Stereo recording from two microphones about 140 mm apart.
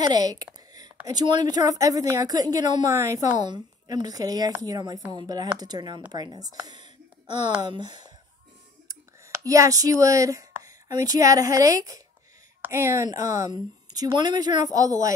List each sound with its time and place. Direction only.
0.0 s a sound: 30° right (ahead or behind)
1.3 s a woman's voice: 30° right (ahead or behind)
6.6 s whispering: 30° right (ahead or behind)
7.6 s speech: 30° right (ahead or behind)
9.3 s a woman's voice: 25° right (ahead or behind)